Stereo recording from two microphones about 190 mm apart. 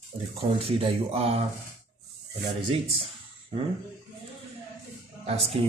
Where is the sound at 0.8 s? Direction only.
30° right (ahead or behind).